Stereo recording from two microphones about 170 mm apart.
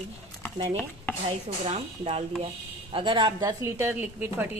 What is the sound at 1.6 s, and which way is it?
A woman's voice, 40° right (ahead or behind).